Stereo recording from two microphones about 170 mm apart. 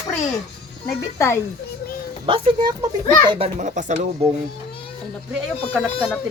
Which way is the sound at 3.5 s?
45° right (ahead or behind).